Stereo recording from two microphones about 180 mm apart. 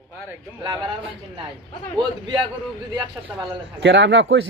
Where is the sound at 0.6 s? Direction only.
30° right (ahead or behind).